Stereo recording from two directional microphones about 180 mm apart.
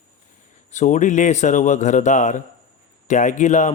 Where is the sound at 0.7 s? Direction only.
40° left (ahead or behind).